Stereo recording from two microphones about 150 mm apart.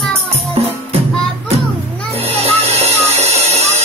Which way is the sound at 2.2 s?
45° right (ahead or behind).